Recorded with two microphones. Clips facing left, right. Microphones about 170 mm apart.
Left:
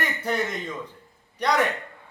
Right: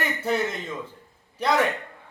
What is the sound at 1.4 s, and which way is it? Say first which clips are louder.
Speech: right 1 dB; 5° right (ahead or behind).